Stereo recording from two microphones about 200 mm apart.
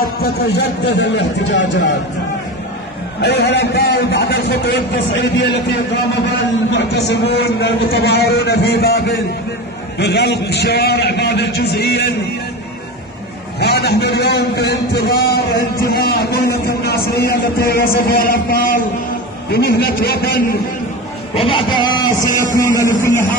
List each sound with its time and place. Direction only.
0.0 s a man's voice: 55° left (ahead or behind)
3.2 s a man's voice: 55° left (ahead or behind)
13.6 s a man's voice: 55° left (ahead or behind)
21.4 s speech: 25° left (ahead or behind)